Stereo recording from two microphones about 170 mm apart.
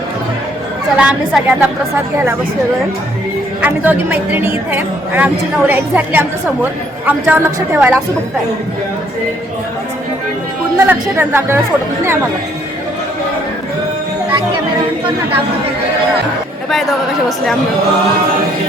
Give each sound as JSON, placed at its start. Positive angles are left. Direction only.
{"t": 0.9, "sound": "a woman's voice", "side_deg": -5}
{"t": 3.6, "sound": "a woman's voice", "side_deg": -10}
{"t": 10.8, "sound": "a woman's voice", "side_deg": -15}
{"t": 16.6, "sound": "a woman's voice", "side_deg": 0}